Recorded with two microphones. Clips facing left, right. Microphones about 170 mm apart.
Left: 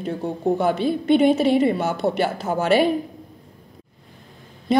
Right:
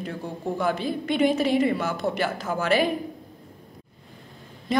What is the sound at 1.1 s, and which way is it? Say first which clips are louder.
Speech: left 6 dB; 60° left (ahead or behind).